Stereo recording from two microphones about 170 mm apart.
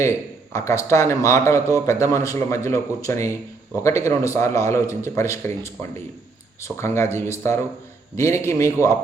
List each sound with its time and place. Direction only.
0.0 s a man's voice: 15° left (ahead or behind)